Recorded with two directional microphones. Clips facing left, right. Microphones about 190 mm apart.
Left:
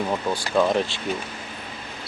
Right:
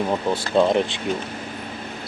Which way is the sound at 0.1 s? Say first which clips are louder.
Right 3 dB; 20° right (ahead or behind).